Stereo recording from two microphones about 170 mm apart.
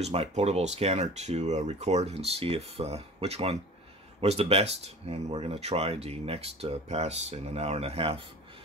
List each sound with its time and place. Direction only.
0.0 s speech: 40° right (ahead or behind)